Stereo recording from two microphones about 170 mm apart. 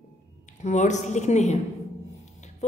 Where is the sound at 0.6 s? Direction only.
45° left (ahead or behind).